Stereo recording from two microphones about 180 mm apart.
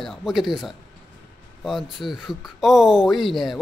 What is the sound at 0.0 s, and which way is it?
Speech, centre (ahead or behind).